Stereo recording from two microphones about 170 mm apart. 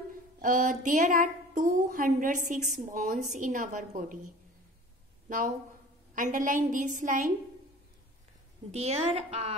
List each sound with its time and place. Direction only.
0.4 s a woman's voice: 50° right (ahead or behind)
6.1 s a woman's voice: 50° right (ahead or behind)
8.7 s a woman's voice: 35° right (ahead or behind)